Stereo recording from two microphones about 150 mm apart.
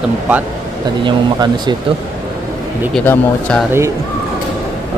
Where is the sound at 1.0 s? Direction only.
30° right (ahead or behind).